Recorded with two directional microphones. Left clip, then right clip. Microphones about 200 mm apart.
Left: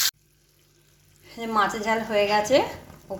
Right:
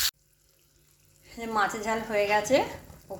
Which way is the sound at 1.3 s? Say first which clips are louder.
Left 4 dB; centre (ahead or behind).